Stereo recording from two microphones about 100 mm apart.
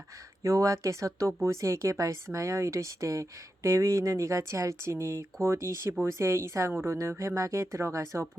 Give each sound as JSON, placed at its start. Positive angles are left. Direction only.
{"t": 0.4, "sound": "speech", "side_deg": -30}